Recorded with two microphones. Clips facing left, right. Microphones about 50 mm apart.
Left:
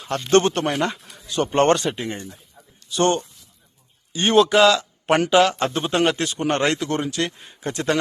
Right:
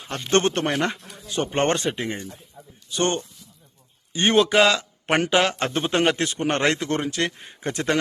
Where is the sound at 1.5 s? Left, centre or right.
Right.